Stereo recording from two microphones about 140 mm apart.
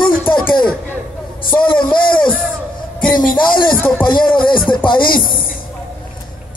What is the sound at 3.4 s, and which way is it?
A man's voice, 35° left (ahead or behind).